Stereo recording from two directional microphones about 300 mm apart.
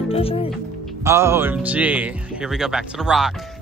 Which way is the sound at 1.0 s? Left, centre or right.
Centre.